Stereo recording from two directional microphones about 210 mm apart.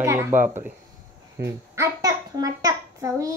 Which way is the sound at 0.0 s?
10° right (ahead or behind).